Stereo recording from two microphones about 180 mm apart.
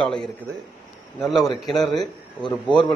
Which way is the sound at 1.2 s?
Centre (ahead or behind).